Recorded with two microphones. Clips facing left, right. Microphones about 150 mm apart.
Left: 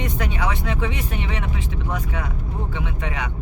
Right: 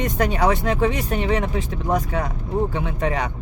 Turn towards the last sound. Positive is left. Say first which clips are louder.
# right 5 dB
turn(degrees=-40)  # may be behind; listen again after turning